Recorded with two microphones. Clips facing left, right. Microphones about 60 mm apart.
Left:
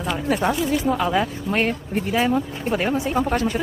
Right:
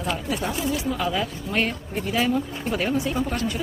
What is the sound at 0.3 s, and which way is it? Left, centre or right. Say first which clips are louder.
Speech: left 8 dB; left.